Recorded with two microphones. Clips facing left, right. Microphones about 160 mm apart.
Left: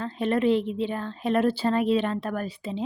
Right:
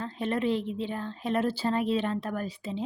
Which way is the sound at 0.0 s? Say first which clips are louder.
Left 5 dB; 70° left (ahead or behind).